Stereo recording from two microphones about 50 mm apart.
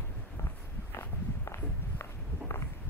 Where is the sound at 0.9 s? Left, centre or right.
Left.